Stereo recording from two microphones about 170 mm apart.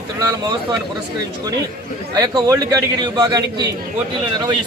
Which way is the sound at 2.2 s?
20° right (ahead or behind).